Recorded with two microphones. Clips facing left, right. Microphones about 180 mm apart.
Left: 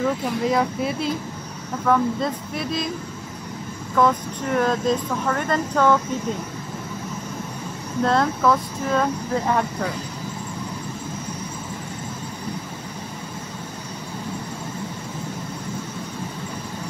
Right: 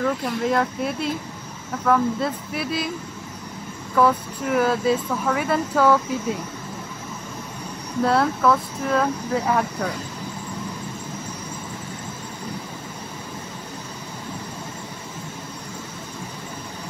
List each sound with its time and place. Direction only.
0.0 s speech: centre (ahead or behind)
3.9 s speech: 5° right (ahead or behind)
8.0 s speech: 5° right (ahead or behind)